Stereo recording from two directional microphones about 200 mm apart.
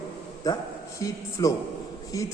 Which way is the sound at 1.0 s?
15° left (ahead or behind).